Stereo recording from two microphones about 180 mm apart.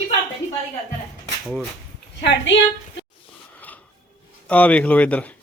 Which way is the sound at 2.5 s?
90° left.